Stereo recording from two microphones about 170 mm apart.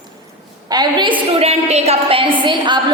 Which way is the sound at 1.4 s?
40° right (ahead or behind).